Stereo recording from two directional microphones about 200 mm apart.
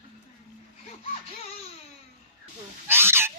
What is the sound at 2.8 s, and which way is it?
Owl, 10° right (ahead or behind).